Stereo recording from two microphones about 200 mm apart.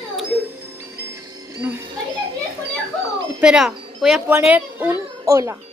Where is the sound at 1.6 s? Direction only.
10° right (ahead or behind).